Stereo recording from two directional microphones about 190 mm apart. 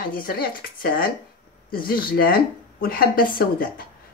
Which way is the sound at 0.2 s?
50° left (ahead or behind).